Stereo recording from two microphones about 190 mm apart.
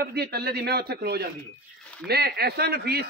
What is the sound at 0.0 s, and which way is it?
A man's voice, 55° right (ahead or behind).